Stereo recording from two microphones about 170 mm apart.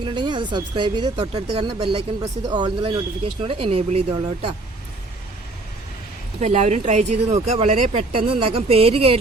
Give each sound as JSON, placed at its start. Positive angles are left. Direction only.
{"t": 0.0, "sound": "speech", "side_deg": -25}
{"t": 1.2, "sound": "speech", "side_deg": -40}
{"t": 6.4, "sound": "speech", "side_deg": -45}